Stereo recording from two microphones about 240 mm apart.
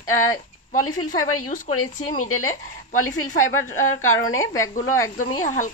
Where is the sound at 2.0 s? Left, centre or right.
Left.